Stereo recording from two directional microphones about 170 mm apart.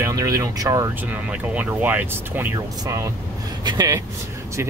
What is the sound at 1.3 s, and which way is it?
Speech, 10° right (ahead or behind).